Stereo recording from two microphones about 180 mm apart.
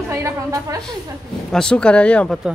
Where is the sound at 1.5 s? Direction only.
5° left (ahead or behind).